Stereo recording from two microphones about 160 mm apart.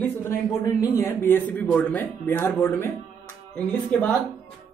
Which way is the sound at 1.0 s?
15° left (ahead or behind).